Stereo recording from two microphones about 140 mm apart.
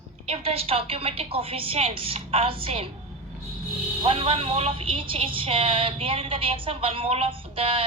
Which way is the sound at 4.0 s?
40° right (ahead or behind).